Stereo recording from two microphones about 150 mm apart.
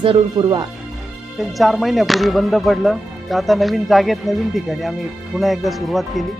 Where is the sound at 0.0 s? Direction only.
30° right (ahead or behind).